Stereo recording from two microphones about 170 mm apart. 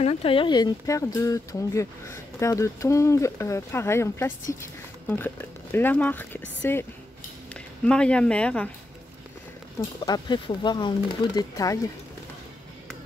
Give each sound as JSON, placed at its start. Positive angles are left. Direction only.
{"t": 0.0, "sound": "speech", "side_deg": 35}
{"t": 10.0, "sound": "speech", "side_deg": 25}